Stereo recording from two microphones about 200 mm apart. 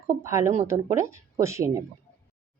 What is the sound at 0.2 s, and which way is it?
A woman's voice, 15° right (ahead or behind).